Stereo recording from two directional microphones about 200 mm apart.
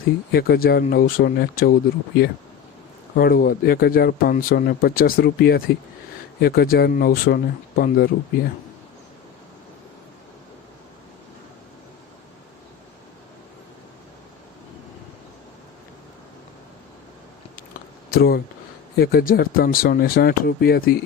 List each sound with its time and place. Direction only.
0.0 s speech: 50° left (ahead or behind)
3.2 s speech: 50° left (ahead or behind)
18.1 s speech: 50° left (ahead or behind)